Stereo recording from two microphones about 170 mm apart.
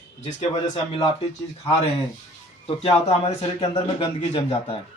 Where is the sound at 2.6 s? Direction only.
35° left (ahead or behind).